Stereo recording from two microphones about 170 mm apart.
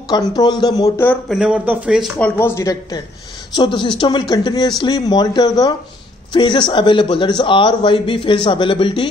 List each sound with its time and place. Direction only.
0.4 s speech: 25° left (ahead or behind)
1.3 s speech: 5° right (ahead or behind)
2.1 s speech: 10° left (ahead or behind); by 9.1 s 30° left (ahead or behind)